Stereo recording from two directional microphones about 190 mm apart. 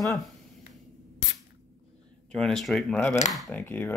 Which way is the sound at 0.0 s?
Centre (ahead or behind).